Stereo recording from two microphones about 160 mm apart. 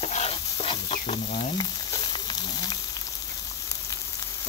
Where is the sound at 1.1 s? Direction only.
40° left (ahead or behind).